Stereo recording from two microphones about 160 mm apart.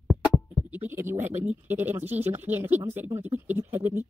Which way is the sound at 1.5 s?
10° right (ahead or behind).